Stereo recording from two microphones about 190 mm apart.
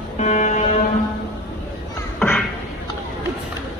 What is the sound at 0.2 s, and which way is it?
Buzzer, 35° left (ahead or behind).